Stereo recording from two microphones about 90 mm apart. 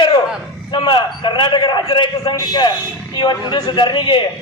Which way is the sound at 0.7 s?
60° left (ahead or behind).